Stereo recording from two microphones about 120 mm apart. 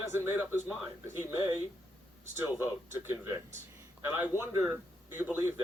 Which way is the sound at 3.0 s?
20° right (ahead or behind).